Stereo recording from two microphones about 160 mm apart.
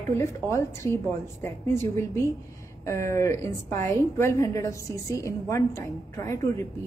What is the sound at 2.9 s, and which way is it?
A woman's voice, 20° left (ahead or behind).